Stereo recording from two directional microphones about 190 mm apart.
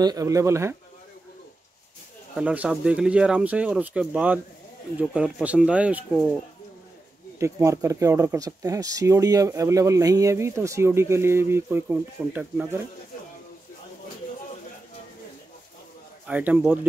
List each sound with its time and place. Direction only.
0.0 s speech: 20° right (ahead or behind)
2.3 s speech: 5° right (ahead or behind)
7.3 s speech: 15° right (ahead or behind)
16.3 s speech: 10° right (ahead or behind)